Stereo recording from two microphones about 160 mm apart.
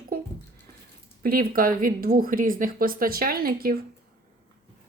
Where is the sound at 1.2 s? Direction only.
65° right (ahead or behind).